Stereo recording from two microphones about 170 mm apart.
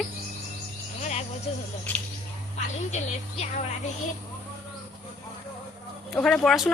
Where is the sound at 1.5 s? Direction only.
35° left (ahead or behind).